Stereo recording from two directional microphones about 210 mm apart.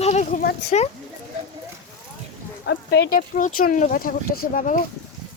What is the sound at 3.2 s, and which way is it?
Speech, 40° left (ahead or behind).